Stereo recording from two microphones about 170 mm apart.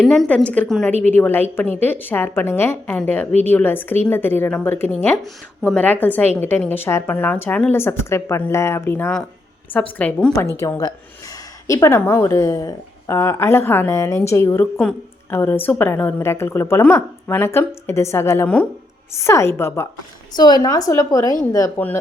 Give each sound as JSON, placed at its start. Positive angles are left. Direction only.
{"t": 0.0, "sound": "a woman's voice", "side_deg": 5}